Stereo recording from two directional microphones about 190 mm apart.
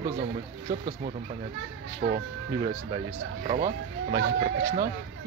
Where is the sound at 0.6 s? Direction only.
35° right (ahead or behind).